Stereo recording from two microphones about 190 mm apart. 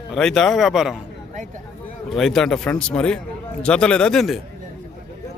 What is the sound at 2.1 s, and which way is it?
Speech, 5° left (ahead or behind).